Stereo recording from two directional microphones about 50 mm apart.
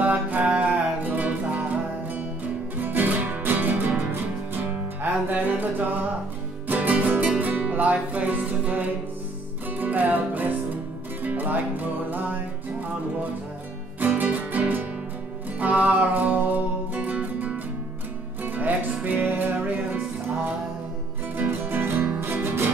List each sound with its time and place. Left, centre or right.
0.0 s music: right
13.9 s music: right
21.4 s music: right